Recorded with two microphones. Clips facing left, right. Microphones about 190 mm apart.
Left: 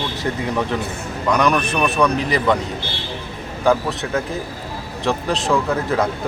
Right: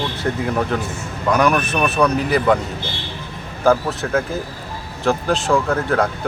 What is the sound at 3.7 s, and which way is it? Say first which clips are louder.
Speech: right 1 dB; centre (ahead or behind).